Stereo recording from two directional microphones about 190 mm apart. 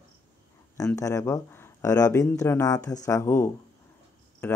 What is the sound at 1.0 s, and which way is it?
Speech, 15° left (ahead or behind).